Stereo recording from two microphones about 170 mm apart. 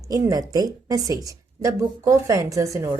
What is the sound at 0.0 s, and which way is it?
A woman's voice, 20° right (ahead or behind).